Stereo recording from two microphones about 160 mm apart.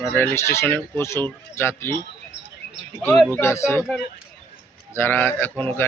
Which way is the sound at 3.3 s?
15° left (ahead or behind).